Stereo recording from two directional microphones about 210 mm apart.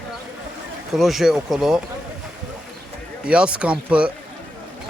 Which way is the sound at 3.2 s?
5° right (ahead or behind).